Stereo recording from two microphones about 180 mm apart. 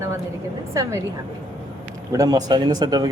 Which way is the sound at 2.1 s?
20° right (ahead or behind).